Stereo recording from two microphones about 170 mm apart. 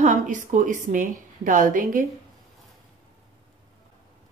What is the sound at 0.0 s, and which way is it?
A woman's voice, 45° right (ahead or behind).